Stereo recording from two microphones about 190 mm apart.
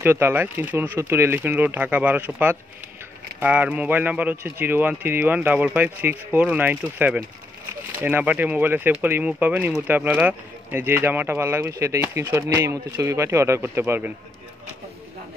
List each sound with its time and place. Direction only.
0.0 s speech: 10° right (ahead or behind)